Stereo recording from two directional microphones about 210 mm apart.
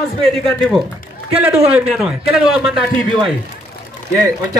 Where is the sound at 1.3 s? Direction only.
5° right (ahead or behind).